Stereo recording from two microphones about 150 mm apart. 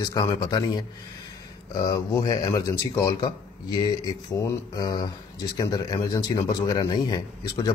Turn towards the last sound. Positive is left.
turn(degrees=25)  # may be behind; listen again after turning